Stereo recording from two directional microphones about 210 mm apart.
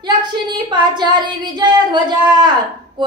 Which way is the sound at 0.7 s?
20° right (ahead or behind).